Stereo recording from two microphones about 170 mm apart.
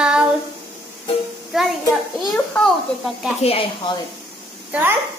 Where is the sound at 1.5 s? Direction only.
Centre (ahead or behind).